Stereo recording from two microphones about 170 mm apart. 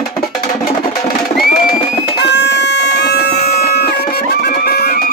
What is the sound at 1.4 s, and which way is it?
Music, 60° left (ahead or behind).